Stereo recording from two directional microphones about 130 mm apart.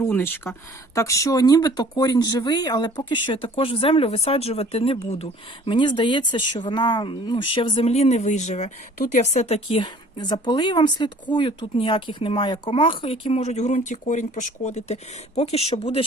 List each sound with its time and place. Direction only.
0.0 s speech: 15° left (ahead or behind); by 5.7 s 50° left (ahead or behind)
5.7 s speech: 35° left (ahead or behind)